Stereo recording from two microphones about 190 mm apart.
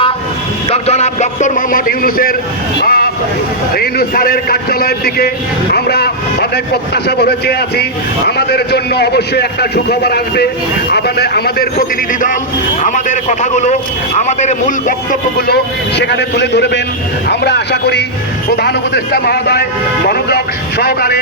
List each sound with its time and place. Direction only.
0.7 s a man's voice: 35° left (ahead or behind); by 2.3 s 50° left (ahead or behind)
2.8 s vehicle: 55° left (ahead or behind)
3.8 s a man's voice: 55° left (ahead or behind)